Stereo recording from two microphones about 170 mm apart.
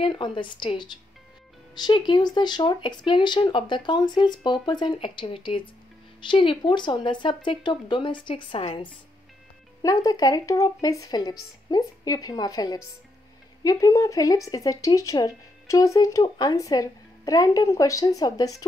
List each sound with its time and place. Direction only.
0.0 s speech: 30° left (ahead or behind)
10.0 s speech: 20° left (ahead or behind)